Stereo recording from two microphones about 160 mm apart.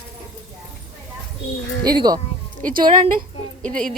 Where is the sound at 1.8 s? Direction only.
25° right (ahead or behind).